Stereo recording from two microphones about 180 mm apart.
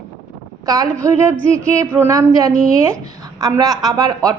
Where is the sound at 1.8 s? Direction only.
15° right (ahead or behind).